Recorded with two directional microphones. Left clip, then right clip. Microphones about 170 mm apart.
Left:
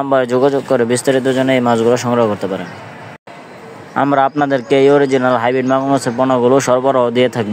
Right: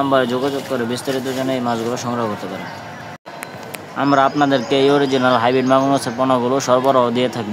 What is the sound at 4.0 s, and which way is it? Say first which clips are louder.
Speech: left 2 dB; 40° left (ahead or behind).